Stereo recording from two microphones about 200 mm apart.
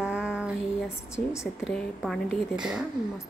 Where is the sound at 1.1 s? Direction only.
15° left (ahead or behind).